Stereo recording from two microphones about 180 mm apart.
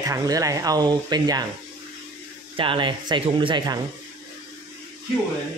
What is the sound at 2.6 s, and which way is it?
Speech, 25° right (ahead or behind).